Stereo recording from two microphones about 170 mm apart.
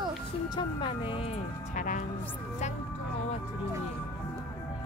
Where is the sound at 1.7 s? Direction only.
50° left (ahead or behind).